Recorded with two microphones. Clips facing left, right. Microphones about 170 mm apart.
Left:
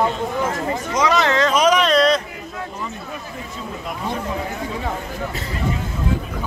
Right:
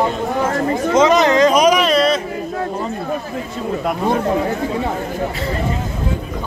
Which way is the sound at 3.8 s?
60° right (ahead or behind).